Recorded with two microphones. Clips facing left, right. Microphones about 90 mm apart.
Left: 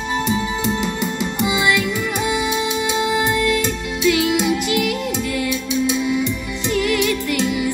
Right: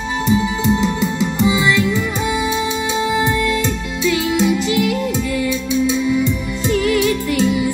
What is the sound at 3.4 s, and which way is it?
Music, 25° right (ahead or behind).